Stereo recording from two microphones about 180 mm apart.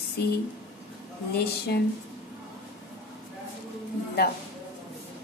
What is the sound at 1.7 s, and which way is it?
Speech, 65° left (ahead or behind).